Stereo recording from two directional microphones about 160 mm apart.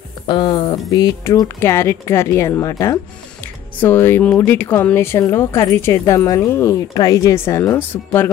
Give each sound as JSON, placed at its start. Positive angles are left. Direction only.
{"t": 0.3, "sound": "speech", "side_deg": 30}